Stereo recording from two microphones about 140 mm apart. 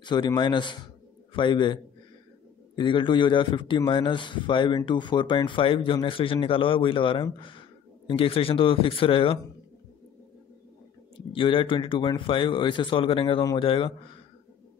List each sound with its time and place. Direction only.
0.0 s a man's voice: 30° left (ahead or behind)
11.3 s a man's voice: 40° left (ahead or behind)